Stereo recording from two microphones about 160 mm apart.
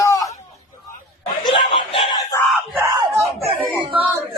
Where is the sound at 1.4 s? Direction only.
30° left (ahead or behind).